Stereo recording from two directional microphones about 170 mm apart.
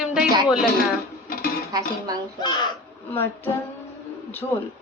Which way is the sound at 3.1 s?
10° left (ahead or behind).